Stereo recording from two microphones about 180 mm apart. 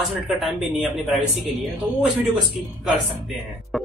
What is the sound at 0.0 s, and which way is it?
A man's voice, centre (ahead or behind).